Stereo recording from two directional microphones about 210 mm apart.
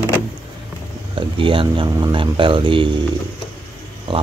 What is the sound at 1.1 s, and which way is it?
Speech, 25° right (ahead or behind).